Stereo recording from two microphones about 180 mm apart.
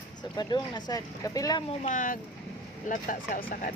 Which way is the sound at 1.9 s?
45° left (ahead or behind).